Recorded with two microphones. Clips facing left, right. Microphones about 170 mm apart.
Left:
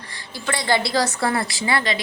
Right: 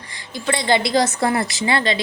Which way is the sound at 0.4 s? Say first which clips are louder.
Right 3 dB; 20° right (ahead or behind).